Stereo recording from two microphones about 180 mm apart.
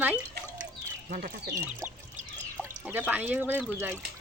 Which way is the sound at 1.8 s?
10° right (ahead or behind).